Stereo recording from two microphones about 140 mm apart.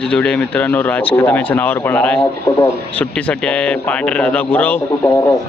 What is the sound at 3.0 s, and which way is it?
Speech, 10° left (ahead or behind).